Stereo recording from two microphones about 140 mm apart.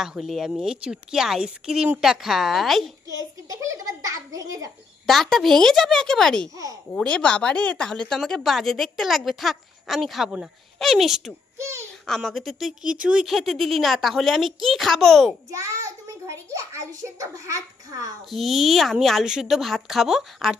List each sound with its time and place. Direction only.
0.0 s a woman's voice: 5° right (ahead or behind)
3.5 s a child's voice: 25° right (ahead or behind)
5.0 s a woman's voice: centre (ahead or behind)
6.5 s a child's voice: 25° right (ahead or behind)
6.9 s a woman's voice: 5° left (ahead or behind)
11.5 s a child's voice: 20° right (ahead or behind)
12.0 s a woman's voice: 5° left (ahead or behind)
15.5 s a child's voice: 20° right (ahead or behind)
18.3 s a woman's voice: centre (ahead or behind)